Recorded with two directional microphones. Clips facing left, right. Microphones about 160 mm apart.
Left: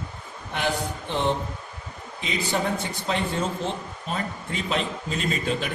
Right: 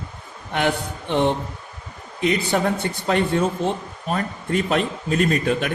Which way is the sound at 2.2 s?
60° right (ahead or behind).